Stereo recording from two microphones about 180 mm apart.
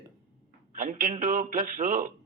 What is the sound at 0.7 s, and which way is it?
A man's voice, 45° right (ahead or behind).